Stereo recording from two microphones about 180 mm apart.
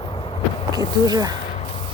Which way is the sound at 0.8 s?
20° right (ahead or behind).